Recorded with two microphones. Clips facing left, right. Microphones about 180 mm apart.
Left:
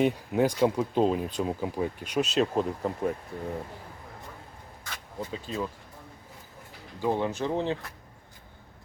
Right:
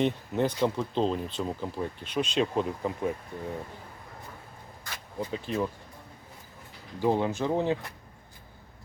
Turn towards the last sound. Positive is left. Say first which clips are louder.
# right 2 dB
turn(degrees=-15)  # may be behind; listen again after turning